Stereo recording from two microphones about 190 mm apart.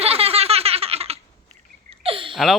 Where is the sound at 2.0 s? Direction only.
30° right (ahead or behind).